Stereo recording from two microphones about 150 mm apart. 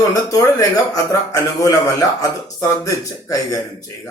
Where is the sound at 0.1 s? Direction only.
25° left (ahead or behind).